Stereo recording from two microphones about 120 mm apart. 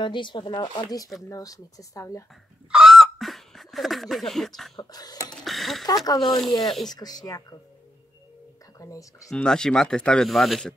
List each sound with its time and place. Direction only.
0.0 s speech: 40° left (ahead or behind)
1.3 s speech: 30° left (ahead or behind)
2.7 s a sound: 5° right (ahead or behind)
4.7 s speech: 30° left (ahead or behind)
5.3 s a sound: centre (ahead or behind)
6.1 s speech: centre (ahead or behind)
7.0 s speech: 35° left (ahead or behind)
8.7 s a sound: 30° left (ahead or behind)
9.3 s speech: 5° left (ahead or behind)